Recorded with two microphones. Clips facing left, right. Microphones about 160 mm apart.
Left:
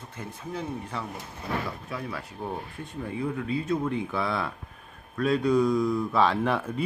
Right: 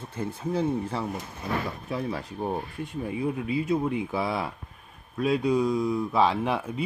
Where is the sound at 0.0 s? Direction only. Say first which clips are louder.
Right 7 dB; 30° right (ahead or behind).